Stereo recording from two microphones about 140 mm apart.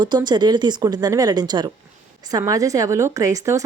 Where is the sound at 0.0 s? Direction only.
30° right (ahead or behind).